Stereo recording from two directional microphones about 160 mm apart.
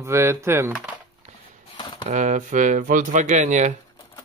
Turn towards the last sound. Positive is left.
turn(degrees=-50)  # may be behind; listen again after turning